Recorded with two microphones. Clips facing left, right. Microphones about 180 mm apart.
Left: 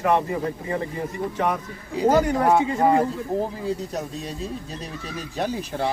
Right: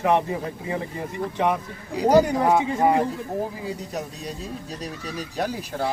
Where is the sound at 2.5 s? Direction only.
Centre (ahead or behind).